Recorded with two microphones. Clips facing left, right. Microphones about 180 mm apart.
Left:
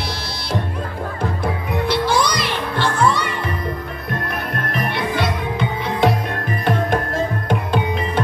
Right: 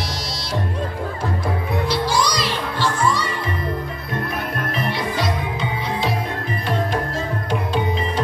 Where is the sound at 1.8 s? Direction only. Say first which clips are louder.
Left 3 dB; 55° left (ahead or behind).